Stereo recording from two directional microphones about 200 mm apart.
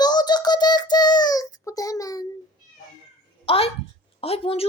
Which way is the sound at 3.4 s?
30° left (ahead or behind).